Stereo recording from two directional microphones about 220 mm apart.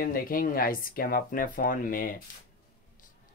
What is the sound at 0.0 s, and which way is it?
Speech, 40° left (ahead or behind).